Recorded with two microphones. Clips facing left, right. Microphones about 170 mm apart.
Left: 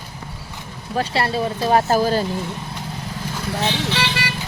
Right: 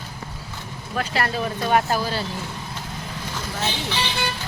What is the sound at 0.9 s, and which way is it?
Speech, 30° left (ahead or behind).